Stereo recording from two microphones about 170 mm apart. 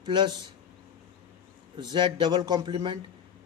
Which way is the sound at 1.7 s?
30° right (ahead or behind).